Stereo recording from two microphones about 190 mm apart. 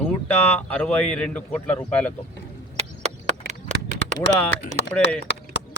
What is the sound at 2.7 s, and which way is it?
Chop, 35° right (ahead or behind).